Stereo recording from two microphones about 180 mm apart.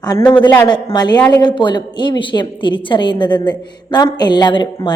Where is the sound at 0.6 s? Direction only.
25° left (ahead or behind).